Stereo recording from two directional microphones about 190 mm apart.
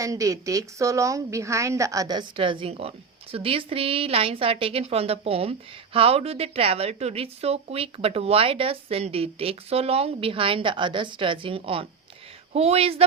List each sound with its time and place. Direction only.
0.0 s a woman's voice: 15° right (ahead or behind)